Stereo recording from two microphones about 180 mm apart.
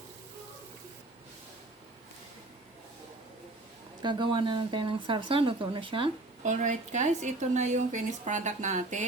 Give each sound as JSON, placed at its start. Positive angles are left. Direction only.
{"t": 4.0, "sound": "speech", "side_deg": -25}
{"t": 6.4, "sound": "speech", "side_deg": -45}